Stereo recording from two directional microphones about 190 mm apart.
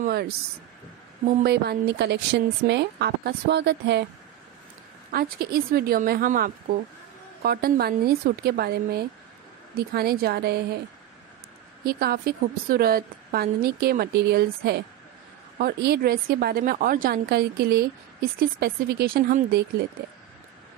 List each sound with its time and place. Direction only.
0.0 s speech: 55° right (ahead or behind)
1.4 s a woman's voice: 60° right (ahead or behind)
5.1 s a woman's voice: 50° right (ahead or behind)
11.8 s a woman's voice: 55° right (ahead or behind)